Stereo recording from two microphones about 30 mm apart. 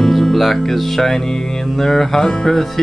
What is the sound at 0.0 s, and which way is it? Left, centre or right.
Music, centre.